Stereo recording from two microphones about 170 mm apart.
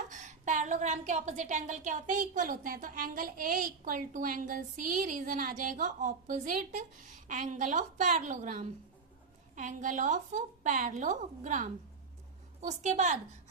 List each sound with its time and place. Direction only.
0.1 s a woman's voice: 45° right (ahead or behind)